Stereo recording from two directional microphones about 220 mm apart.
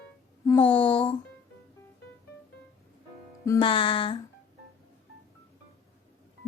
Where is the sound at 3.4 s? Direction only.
20° left (ahead or behind).